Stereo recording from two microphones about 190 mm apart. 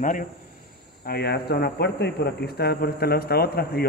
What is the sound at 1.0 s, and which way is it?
Speech, 55° left (ahead or behind).